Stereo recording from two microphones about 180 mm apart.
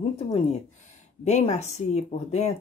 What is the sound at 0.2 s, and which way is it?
Speech, 35° left (ahead or behind).